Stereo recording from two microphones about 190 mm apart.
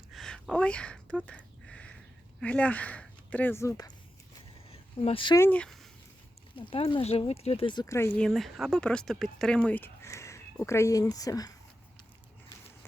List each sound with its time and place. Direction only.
0.1 s speech: centre (ahead or behind)
1.2 s a sound: 5° left (ahead or behind)
2.4 s speech: 5° left (ahead or behind)
4.7 s a sound: 30° left (ahead or behind)
5.4 s speech: 5° left (ahead or behind)
6.6 s speech: 30° left (ahead or behind)